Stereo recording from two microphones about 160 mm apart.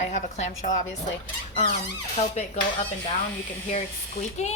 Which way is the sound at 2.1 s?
45° left (ahead or behind).